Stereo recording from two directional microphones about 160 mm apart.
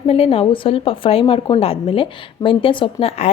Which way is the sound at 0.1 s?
35° left (ahead or behind).